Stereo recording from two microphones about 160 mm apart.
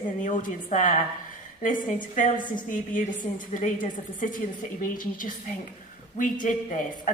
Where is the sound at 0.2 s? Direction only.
55° left (ahead or behind).